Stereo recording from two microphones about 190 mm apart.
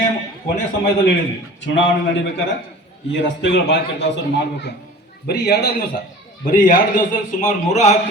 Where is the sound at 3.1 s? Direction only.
70° left (ahead or behind).